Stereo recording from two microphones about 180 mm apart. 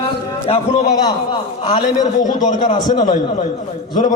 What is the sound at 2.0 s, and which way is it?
A man's voice, 25° left (ahead or behind).